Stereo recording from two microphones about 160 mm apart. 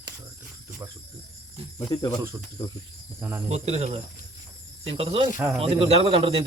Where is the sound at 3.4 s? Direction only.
45° right (ahead or behind).